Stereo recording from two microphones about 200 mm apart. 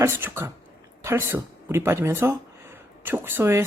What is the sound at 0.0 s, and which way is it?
Speech, 10° right (ahead or behind).